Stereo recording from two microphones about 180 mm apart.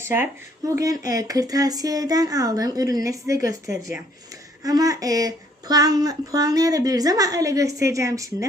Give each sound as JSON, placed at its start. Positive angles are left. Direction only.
{"t": 0.0, "sound": "a woman's voice", "side_deg": -15}